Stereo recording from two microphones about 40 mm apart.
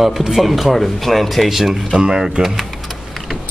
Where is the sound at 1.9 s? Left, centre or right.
Centre.